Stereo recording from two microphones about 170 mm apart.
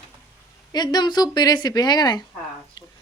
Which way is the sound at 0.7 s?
25° left (ahead or behind).